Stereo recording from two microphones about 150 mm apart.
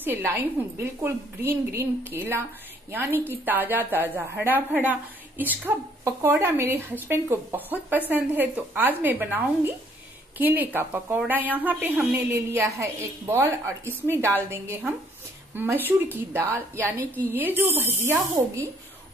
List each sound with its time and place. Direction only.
0.0 s a woman's voice: 15° right (ahead or behind)